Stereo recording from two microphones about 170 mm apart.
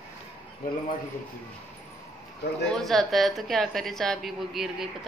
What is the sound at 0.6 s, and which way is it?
Speech, 55° left (ahead or behind).